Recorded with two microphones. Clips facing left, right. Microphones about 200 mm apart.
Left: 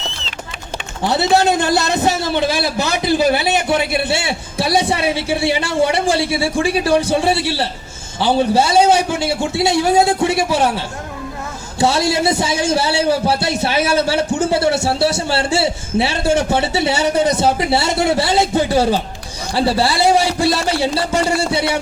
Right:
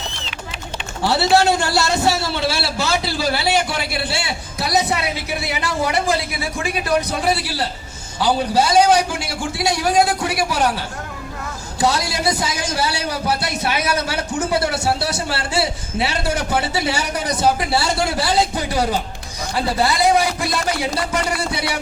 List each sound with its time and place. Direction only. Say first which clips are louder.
1.0 s a man's voice: left 1 dB; 20° left (ahead or behind)